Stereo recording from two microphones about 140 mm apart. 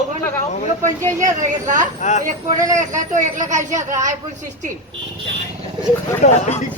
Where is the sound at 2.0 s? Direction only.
55° left (ahead or behind).